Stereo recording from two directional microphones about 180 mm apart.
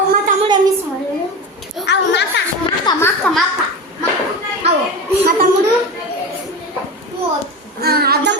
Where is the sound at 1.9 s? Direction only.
75° left (ahead or behind).